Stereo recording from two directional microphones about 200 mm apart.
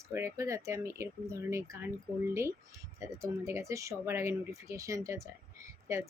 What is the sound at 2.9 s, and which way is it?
Speech, 15° right (ahead or behind).